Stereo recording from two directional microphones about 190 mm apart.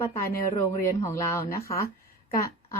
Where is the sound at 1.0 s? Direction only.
15° left (ahead or behind).